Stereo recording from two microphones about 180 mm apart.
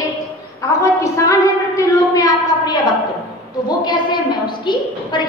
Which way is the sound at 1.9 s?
20° left (ahead or behind).